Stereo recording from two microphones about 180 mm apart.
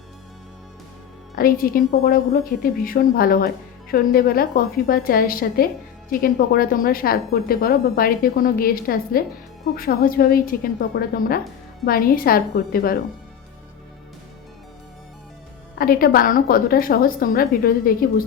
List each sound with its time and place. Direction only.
1.4 s speech: 55° left (ahead or behind)
15.8 s speech: 55° left (ahead or behind)